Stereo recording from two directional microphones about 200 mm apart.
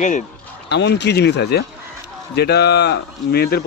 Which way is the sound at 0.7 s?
60° left (ahead or behind).